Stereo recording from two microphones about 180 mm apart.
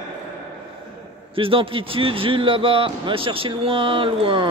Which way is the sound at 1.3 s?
30° right (ahead or behind).